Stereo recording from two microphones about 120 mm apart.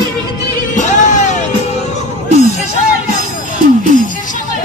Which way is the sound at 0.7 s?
90° left.